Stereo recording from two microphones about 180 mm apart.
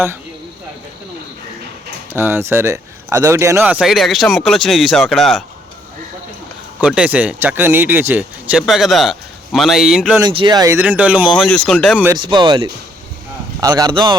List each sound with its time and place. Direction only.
2.1 s speech: 10° right (ahead or behind)
6.8 s speech: 5° right (ahead or behind)
10.2 s speech: 25° right (ahead or behind); by 12.0 s centre (ahead or behind)
12.0 s speech: 25° right (ahead or behind)